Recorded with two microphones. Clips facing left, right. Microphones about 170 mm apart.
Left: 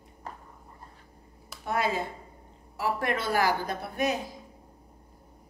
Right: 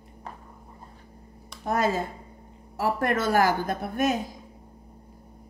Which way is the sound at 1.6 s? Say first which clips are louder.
Right 3 dB; 45° right (ahead or behind).